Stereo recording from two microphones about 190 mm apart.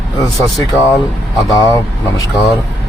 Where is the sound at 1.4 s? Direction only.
20° left (ahead or behind).